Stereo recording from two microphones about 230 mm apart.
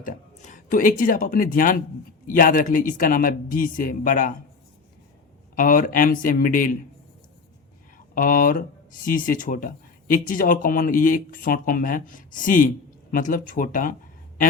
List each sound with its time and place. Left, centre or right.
0.0 s speech: left
5.5 s speech: left
8.1 s speech: left